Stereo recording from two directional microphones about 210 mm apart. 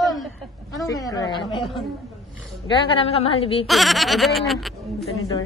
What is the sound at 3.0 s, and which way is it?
Speech, 25° left (ahead or behind).